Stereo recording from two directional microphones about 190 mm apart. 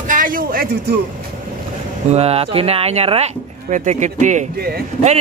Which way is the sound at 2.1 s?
30° right (ahead or behind).